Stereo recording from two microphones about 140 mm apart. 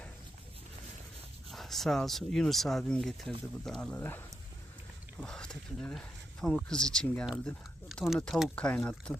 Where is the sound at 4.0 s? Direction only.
15° left (ahead or behind).